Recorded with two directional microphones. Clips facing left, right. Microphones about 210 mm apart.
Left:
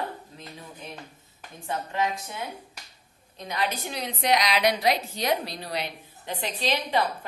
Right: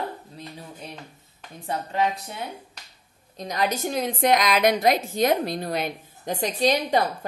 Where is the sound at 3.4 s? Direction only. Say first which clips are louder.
Right 4 dB; 40° right (ahead or behind).